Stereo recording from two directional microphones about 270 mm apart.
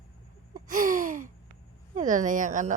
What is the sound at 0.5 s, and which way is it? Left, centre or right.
Gasp, right.